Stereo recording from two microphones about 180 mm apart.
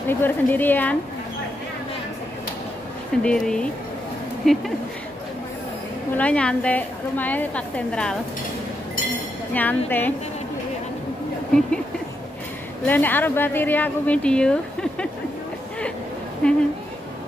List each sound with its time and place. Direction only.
0.1 s a woman's voice: 10° left (ahead or behind)
3.2 s speech: 5° left (ahead or behind)
6.1 s a woman's voice: 5° left (ahead or behind)
9.5 s a woman's voice: 10° left (ahead or behind)
12.8 s a woman's voice: 10° left (ahead or behind)
16.4 s speech: 5° left (ahead or behind)